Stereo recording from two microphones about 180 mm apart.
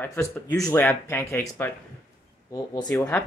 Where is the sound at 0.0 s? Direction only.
10° left (ahead or behind).